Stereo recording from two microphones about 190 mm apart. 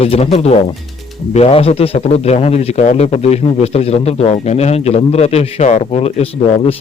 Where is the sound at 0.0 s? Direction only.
30° left (ahead or behind).